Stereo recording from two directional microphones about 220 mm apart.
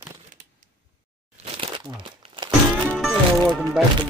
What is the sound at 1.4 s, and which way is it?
Crumpling, 25° right (ahead or behind).